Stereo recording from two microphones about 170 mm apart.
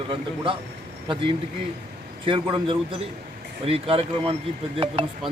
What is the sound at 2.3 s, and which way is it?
A man's voice, 30° right (ahead or behind).